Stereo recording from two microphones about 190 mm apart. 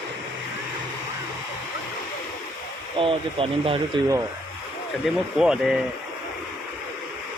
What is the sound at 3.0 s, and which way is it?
Speech, 30° right (ahead or behind).